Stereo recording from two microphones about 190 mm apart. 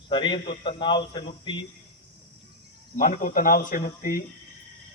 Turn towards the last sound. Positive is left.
turn(degrees=50)  # may be behind; listen again after turning